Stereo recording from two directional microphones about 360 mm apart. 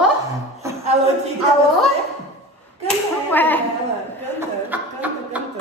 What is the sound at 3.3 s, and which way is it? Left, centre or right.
Speech, centre.